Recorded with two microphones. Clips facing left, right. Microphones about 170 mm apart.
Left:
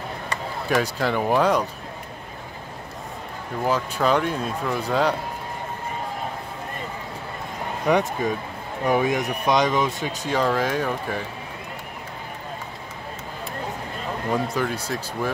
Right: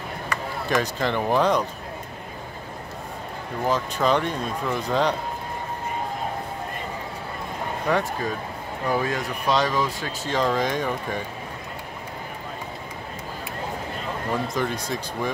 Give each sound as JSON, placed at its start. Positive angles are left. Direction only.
{"t": 0.7, "sound": "speech", "side_deg": 10}
{"t": 3.6, "sound": "speech", "side_deg": 10}
{"t": 7.9, "sound": "speech", "side_deg": 20}
{"t": 14.5, "sound": "speech", "side_deg": 5}